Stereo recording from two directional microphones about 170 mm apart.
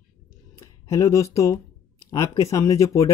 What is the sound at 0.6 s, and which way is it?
Speech, 20° left (ahead or behind).